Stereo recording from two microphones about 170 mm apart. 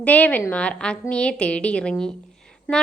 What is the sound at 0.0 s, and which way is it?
A woman's voice, 10° left (ahead or behind).